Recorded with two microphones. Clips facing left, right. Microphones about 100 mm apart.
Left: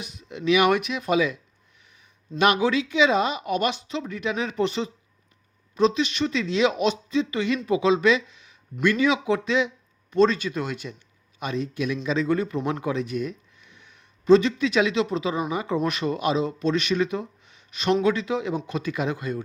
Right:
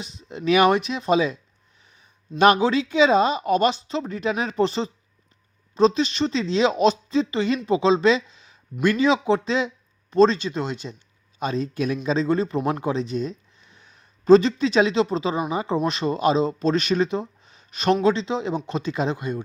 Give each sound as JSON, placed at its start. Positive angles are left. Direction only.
{"t": 0.0, "sound": "speech", "side_deg": -30}
{"t": 2.4, "sound": "speech", "side_deg": -35}
{"t": 18.0, "sound": "speech", "side_deg": -25}